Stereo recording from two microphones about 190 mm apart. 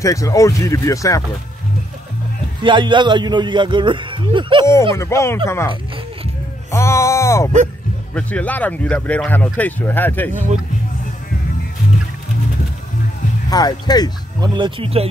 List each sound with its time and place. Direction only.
0.0 s speech: 15° left (ahead or behind)
2.6 s a man's voice: 25° right (ahead or behind)
4.9 s speech: 15° left (ahead or behind)
6.7 s a sound: 15° left (ahead or behind)
8.1 s speech: 5° left (ahead or behind)
13.5 s speech: 20° left (ahead or behind)
14.4 s a man's voice: 25° right (ahead or behind)